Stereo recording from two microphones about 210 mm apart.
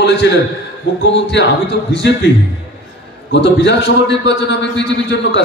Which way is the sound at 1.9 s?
55° left (ahead or behind).